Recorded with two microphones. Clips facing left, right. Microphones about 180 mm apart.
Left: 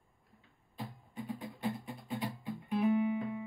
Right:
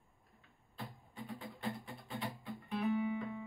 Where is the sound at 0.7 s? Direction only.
15° left (ahead or behind).